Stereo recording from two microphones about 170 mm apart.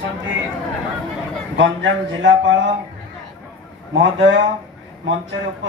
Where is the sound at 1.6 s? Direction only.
90° right.